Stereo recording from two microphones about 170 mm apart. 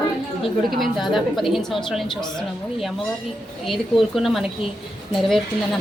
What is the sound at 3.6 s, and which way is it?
Speech, centre (ahead or behind).